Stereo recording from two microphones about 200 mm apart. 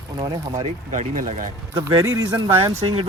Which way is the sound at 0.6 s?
40° right (ahead or behind).